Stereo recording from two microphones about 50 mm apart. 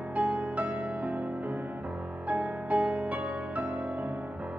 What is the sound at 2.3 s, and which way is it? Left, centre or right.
Music, right.